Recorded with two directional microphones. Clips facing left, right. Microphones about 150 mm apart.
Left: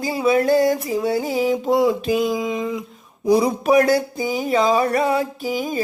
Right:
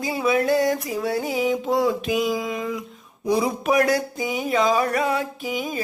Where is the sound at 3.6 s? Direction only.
30° left (ahead or behind).